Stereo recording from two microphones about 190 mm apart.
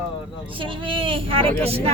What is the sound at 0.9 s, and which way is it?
Speech, 25° right (ahead or behind).